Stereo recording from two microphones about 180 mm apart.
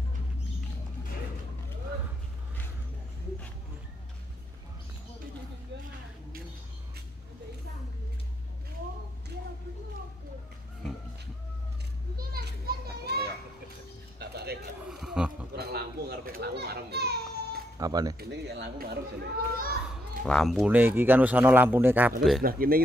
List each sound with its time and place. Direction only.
12.2 s children playing: 60° right (ahead or behind)
14.2 s a sound: 65° right (ahead or behind)
14.9 s a sound: 5° right (ahead or behind)
15.5 s children playing: 60° right (ahead or behind)
17.7 s speech: 20° right (ahead or behind)
18.3 s a sound: 70° right (ahead or behind)
19.3 s a child's voice: 55° right (ahead or behind)
19.9 s speech: centre (ahead or behind)
22.4 s a child's voice: 55° right (ahead or behind)